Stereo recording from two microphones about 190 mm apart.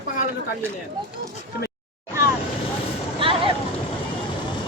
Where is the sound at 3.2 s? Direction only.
25° right (ahead or behind).